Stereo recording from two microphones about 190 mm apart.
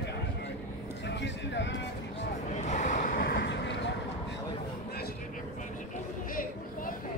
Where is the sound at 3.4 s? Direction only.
70° left (ahead or behind).